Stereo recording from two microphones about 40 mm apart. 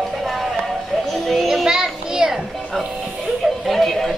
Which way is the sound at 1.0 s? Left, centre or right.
Centre.